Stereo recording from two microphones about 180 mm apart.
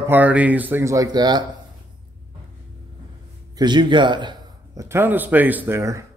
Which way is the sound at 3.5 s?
25° right (ahead or behind).